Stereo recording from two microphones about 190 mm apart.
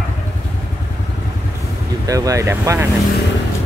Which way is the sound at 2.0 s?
15° right (ahead or behind).